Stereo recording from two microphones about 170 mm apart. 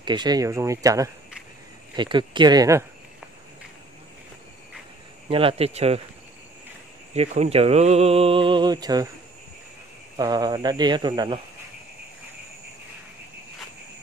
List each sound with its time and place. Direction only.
0.0 s speech: 25° right (ahead or behind)
5.3 s speech: 35° right (ahead or behind)
7.2 s speech: 40° right (ahead or behind); by 9.1 s 25° right (ahead or behind)
10.1 s speech: 25° right (ahead or behind)